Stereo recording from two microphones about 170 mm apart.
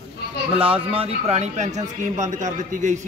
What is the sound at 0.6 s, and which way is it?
A man's voice, 30° right (ahead or behind).